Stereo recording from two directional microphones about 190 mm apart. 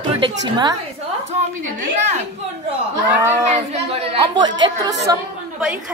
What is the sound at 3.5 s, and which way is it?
A woman's voice, 30° right (ahead or behind).